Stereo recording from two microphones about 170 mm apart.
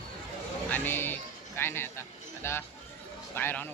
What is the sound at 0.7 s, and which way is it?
Music, 10° left (ahead or behind).